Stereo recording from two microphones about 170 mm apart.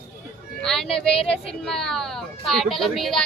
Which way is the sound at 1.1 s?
35° left (ahead or behind).